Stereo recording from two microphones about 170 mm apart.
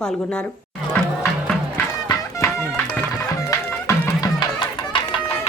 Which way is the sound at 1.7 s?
15° left (ahead or behind).